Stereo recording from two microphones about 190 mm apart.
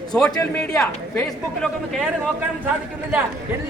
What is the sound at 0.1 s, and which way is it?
A man's voice, 10° left (ahead or behind).